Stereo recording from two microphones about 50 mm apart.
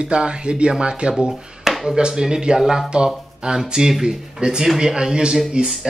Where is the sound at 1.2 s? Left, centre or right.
Centre.